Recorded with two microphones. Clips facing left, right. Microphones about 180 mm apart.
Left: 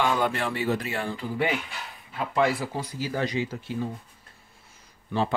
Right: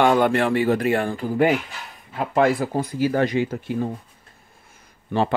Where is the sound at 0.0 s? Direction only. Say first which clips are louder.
Right 8 dB; 55° right (ahead or behind).